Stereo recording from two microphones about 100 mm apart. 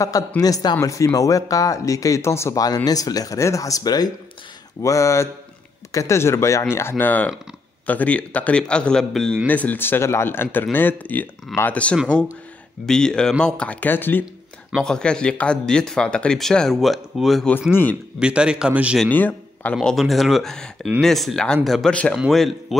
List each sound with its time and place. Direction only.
0.4 s speech: 40° left (ahead or behind)
4.8 s speech: 30° left (ahead or behind); by 9.4 s 5° left (ahead or behind)
9.5 s speech: 15° left (ahead or behind)
14.8 s a man's voice: 5° left (ahead or behind); by 18.9 s 10° right (ahead or behind)
19.0 s speech: 15° left (ahead or behind); by 22.8 s centre (ahead or behind)